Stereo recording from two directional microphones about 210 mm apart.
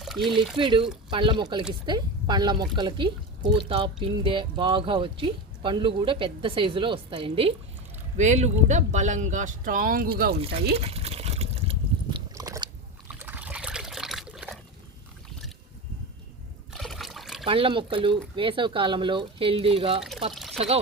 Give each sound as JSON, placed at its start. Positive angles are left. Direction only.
{"t": 0.0, "sound": "pour", "side_deg": 0}
{"t": 0.5, "sound": "speech", "side_deg": -25}
{"t": 10.8, "sound": "liquid", "side_deg": -30}
{"t": 12.3, "sound": "biting", "side_deg": -15}
{"t": 13.1, "sound": "trickle", "side_deg": -10}
{"t": 16.7, "sound": "trickle", "side_deg": 0}
{"t": 17.4, "sound": "speech", "side_deg": -25}
{"t": 20.3, "sound": "pour", "side_deg": 0}